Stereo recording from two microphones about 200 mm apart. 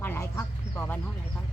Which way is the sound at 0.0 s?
10° left (ahead or behind).